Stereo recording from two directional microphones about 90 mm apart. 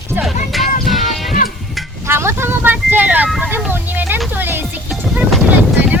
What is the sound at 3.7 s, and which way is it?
Music, 20° right (ahead or behind).